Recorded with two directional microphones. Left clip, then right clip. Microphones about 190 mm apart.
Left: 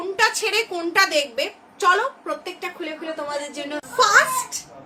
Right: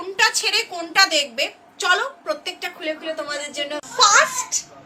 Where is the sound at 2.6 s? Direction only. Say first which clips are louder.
Right 3 dB; 5° left (ahead or behind).